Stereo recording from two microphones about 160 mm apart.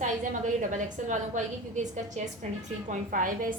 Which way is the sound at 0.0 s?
50° right (ahead or behind).